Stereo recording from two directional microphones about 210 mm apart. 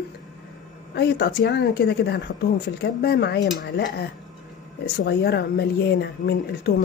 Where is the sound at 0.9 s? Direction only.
50° left (ahead or behind).